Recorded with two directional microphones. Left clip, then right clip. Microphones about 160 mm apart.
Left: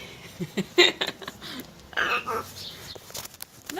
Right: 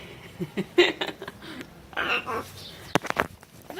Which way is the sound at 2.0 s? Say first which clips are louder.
Left 1 dB; 5° right (ahead or behind).